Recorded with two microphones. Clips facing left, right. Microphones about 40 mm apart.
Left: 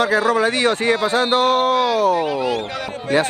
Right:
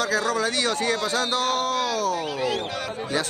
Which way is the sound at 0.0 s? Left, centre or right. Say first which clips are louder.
Left 7 dB; left.